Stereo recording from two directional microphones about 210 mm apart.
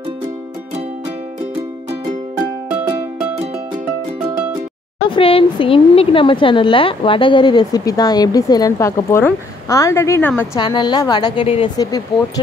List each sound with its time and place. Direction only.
5.1 s a woman's voice: 25° left (ahead or behind)